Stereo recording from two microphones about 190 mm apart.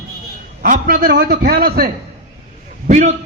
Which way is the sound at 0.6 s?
50° right (ahead or behind).